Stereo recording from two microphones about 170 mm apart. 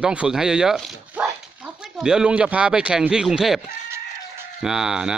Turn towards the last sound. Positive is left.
turn(degrees=-5)  # may be behind; listen again after turning